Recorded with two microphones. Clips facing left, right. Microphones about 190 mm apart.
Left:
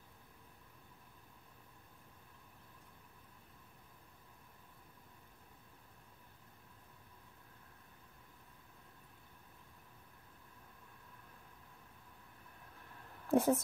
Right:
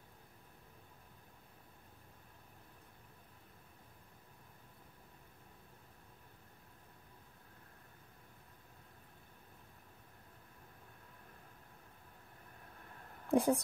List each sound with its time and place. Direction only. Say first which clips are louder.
13.3 s speech: even; centre (ahead or behind)